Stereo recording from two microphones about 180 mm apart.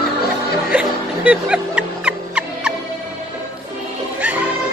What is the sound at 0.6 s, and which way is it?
Music, 5° right (ahead or behind).